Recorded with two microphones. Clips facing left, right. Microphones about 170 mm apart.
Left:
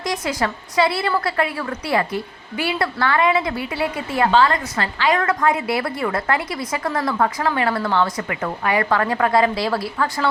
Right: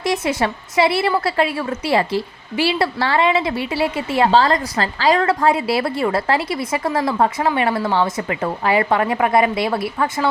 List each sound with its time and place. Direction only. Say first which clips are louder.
0.0 s a woman's voice: right 3 dB; 25° right (ahead or behind)